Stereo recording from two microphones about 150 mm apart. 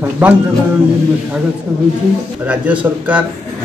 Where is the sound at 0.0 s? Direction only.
10° right (ahead or behind).